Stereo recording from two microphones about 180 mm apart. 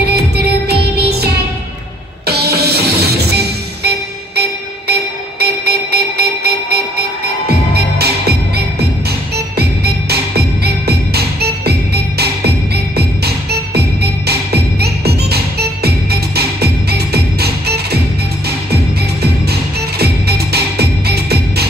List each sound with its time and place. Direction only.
0.0 s music: 60° right (ahead or behind)
5.4 s music: 60° right (ahead or behind)
20.0 s music: 60° right (ahead or behind)